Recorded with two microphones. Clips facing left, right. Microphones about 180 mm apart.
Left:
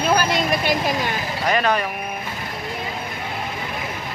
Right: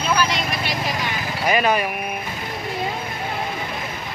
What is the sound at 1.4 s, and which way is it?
Speech, 5° right (ahead or behind).